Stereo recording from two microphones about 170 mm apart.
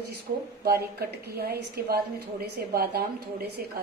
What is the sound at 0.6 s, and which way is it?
A woman's voice, 65° right (ahead or behind).